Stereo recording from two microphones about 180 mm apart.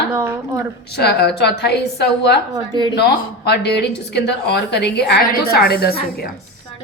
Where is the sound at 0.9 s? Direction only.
65° left (ahead or behind).